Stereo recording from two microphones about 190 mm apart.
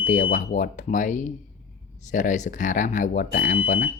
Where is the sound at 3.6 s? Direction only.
30° left (ahead or behind).